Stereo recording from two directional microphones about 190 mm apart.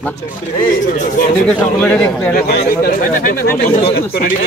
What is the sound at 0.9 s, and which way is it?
Speech, 40° left (ahead or behind).